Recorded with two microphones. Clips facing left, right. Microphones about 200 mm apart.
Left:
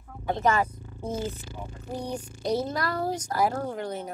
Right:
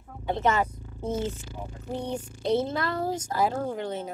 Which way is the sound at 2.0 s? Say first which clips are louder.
Right 1 dB; 25° right (ahead or behind).